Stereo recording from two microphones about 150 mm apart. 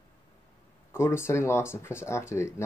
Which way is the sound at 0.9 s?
15° left (ahead or behind).